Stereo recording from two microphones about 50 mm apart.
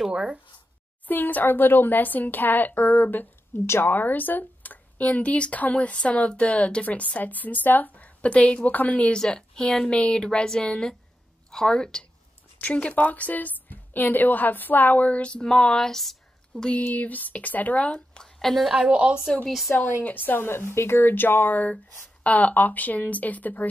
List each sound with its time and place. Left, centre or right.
0.0 s speech: centre
1.0 s speech: left
2.8 s a woman's voice: left
3.9 s speech: left
9.2 s a woman's voice: centre
12.5 s speech: left; by 16.6 s centre
16.7 s speech: left
18.2 s a woman's voice: centre
18.9 s a woman's voice: right
19.8 s speech: left